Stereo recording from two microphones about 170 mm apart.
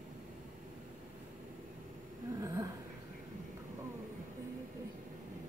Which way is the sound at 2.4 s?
20° right (ahead or behind).